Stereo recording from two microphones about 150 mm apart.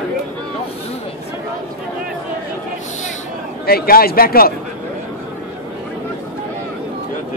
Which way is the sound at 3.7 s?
85° left.